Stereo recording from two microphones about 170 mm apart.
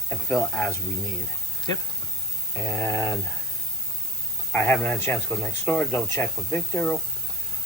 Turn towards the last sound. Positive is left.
turn(degrees=10)  # may be behind; listen again after turning